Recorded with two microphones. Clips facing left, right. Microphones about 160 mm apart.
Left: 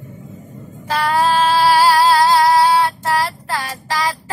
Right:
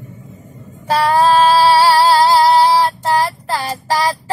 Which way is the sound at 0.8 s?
35° right (ahead or behind).